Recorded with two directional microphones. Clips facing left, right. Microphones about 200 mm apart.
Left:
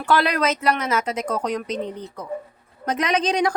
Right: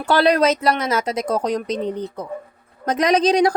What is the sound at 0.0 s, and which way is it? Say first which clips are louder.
A woman's voice: right 4 dB; 30° right (ahead or behind).